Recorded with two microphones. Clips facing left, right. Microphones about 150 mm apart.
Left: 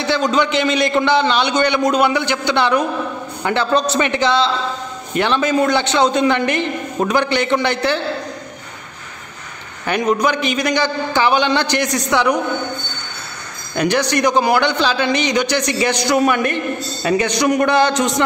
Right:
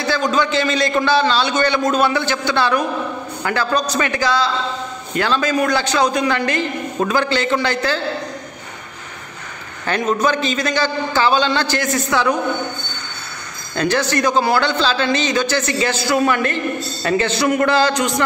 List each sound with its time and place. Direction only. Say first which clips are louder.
0.0 s a man's voice: left 1 dB; 20° left (ahead or behind)
9.8 s a man's voice: left 1 dB; 15° left (ahead or behind)
13.7 s a man's voice: left 1 dB; 15° left (ahead or behind)